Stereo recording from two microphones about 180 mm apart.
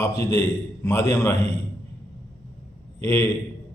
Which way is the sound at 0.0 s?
20° left (ahead or behind).